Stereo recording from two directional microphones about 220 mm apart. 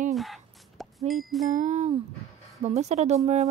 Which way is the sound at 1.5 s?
30° right (ahead or behind).